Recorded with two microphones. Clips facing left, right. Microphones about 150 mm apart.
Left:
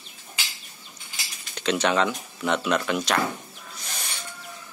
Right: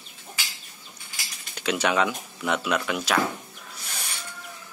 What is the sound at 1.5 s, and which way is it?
Speech, 10° right (ahead or behind).